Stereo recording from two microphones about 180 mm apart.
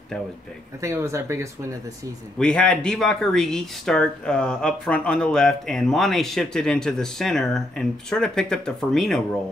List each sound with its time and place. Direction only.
0.7 s speech: 15° right (ahead or behind)
2.3 s speech: 5° left (ahead or behind)